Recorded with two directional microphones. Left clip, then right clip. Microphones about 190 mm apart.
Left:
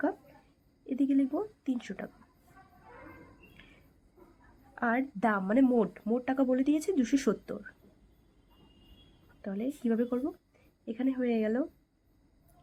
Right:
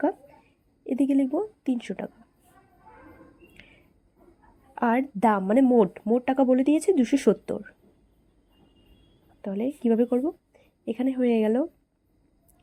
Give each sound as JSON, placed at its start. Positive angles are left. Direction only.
{"t": 0.9, "sound": "a sound", "side_deg": -25}
{"t": 1.6, "sound": "speech", "side_deg": -20}
{"t": 4.7, "sound": "speech", "side_deg": -25}
{"t": 9.4, "sound": "speech", "side_deg": -20}